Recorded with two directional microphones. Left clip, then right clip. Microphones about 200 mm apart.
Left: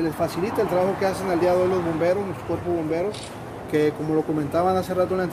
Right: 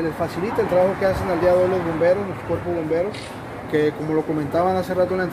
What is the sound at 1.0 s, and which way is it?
Speech, 40° left (ahead or behind).